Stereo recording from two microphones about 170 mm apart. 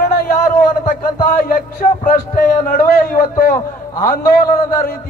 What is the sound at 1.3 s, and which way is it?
A man's voice, 55° left (ahead or behind).